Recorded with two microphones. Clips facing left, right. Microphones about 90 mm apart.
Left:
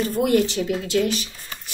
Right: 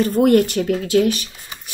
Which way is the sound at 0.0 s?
50° right (ahead or behind).